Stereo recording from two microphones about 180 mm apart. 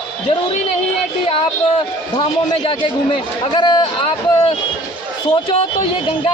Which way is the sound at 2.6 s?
30° left (ahead or behind).